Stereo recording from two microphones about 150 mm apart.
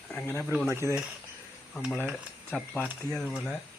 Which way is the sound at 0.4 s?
5° right (ahead or behind).